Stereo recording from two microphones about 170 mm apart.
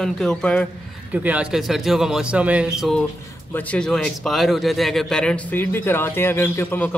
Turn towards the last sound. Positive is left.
turn(degrees=10)  # may be behind; listen again after turning